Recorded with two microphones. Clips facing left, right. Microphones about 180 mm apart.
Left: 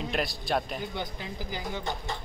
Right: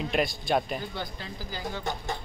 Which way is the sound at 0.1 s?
Centre (ahead or behind).